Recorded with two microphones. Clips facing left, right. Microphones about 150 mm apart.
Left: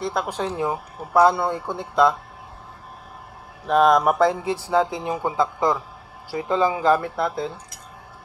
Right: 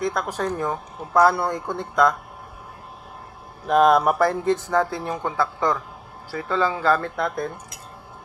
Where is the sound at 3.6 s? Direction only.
5° right (ahead or behind).